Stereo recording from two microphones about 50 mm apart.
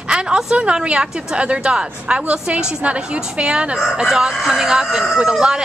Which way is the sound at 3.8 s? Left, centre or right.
Centre.